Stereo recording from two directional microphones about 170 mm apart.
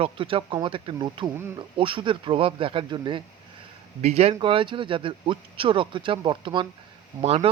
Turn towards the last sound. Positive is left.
turn(degrees=-35)  # may be behind; listen again after turning